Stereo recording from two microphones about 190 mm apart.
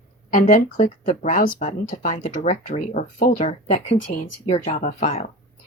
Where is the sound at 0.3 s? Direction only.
45° left (ahead or behind).